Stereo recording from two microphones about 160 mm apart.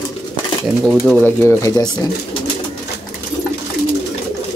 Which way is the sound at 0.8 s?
5° right (ahead or behind).